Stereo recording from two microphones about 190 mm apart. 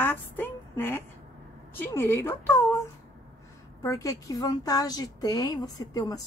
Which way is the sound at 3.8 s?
15° left (ahead or behind).